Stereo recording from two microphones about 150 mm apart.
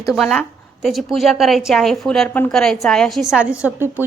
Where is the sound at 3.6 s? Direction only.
15° right (ahead or behind).